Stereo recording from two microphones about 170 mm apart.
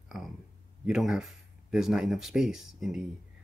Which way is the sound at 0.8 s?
5° right (ahead or behind).